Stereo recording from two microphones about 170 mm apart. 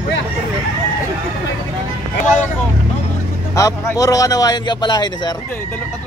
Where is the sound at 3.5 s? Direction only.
20° left (ahead or behind).